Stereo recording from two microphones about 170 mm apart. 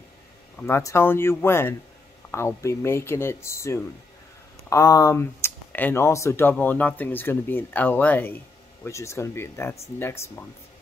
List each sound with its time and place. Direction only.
0.6 s speech: 15° left (ahead or behind)